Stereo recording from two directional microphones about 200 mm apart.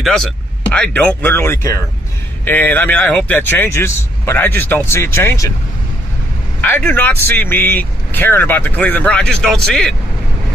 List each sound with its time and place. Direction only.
0.0 s speech: 5° left (ahead or behind)
6.6 s speech: 10° left (ahead or behind)